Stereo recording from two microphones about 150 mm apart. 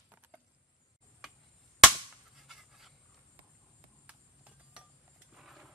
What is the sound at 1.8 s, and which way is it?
Cap gun, centre (ahead or behind).